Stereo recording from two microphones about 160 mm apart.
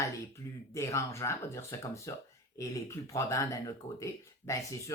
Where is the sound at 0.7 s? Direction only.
20° left (ahead or behind).